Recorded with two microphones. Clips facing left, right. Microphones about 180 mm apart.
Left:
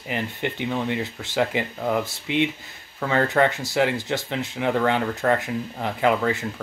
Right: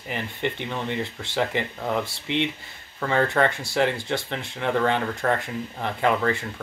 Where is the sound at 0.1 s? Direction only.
10° left (ahead or behind).